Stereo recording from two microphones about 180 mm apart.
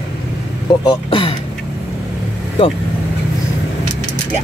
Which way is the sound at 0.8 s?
30° left (ahead or behind).